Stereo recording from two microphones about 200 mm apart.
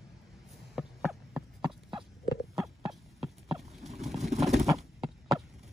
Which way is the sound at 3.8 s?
30° right (ahead or behind).